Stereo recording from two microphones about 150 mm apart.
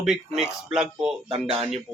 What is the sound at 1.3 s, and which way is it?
Speech, 35° right (ahead or behind).